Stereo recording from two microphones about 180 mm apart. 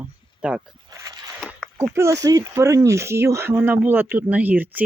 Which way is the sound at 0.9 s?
20° right (ahead or behind).